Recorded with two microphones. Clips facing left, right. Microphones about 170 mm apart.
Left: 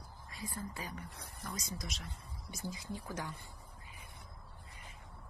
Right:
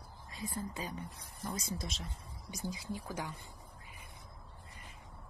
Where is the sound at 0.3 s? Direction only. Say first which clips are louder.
Right 3 dB; 20° right (ahead or behind).